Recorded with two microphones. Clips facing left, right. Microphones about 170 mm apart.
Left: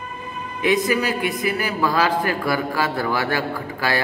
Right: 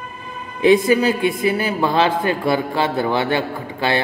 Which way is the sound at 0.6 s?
30° right (ahead or behind).